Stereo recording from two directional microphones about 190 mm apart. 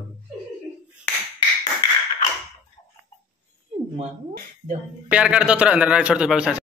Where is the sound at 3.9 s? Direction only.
45° right (ahead or behind).